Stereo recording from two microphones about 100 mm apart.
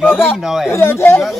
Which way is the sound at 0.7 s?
25° left (ahead or behind).